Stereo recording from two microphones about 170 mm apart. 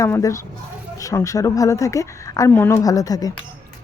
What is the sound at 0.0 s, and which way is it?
A woman's voice, 20° left (ahead or behind).